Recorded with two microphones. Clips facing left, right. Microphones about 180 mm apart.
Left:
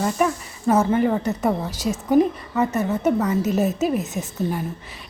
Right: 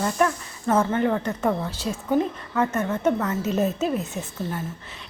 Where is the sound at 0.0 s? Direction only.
5° left (ahead or behind).